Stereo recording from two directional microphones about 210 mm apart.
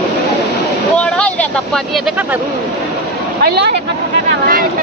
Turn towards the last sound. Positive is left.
turn(degrees=-50)  # may be behind; listen again after turning